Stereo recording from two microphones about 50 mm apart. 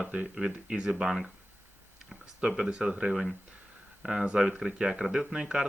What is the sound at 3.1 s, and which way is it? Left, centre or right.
Speech, centre.